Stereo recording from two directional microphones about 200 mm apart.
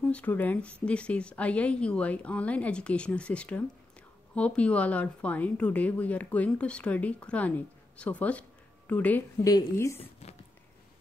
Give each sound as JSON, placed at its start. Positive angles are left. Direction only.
{"t": 0.0, "sound": "a woman's voice", "side_deg": 5}
{"t": 10.2, "sound": "speech", "side_deg": 30}